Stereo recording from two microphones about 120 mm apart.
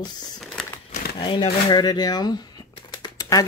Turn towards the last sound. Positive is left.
turn(degrees=30)  # may be behind; listen again after turning